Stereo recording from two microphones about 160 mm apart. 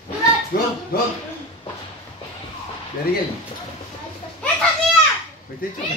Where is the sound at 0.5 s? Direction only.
65° left (ahead or behind).